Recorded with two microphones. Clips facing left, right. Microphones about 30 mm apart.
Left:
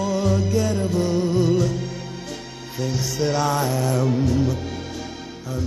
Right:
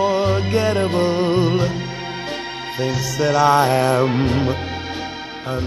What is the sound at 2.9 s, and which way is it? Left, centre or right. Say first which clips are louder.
Music: right 4 dB; centre.